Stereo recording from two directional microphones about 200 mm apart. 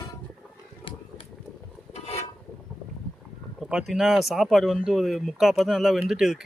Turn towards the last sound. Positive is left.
turn(degrees=0)  # may be behind; listen again after turning